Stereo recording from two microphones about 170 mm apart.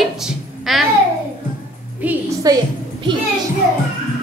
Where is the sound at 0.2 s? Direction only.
Centre (ahead or behind).